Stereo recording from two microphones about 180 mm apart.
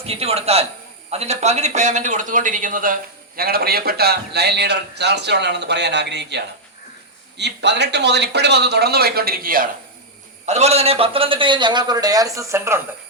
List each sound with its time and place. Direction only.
0.0 s a man's voice: 35° right (ahead or behind); by 9.6 s 55° right (ahead or behind)
10.4 s a man's voice: 35° right (ahead or behind); by 12.8 s 15° right (ahead or behind)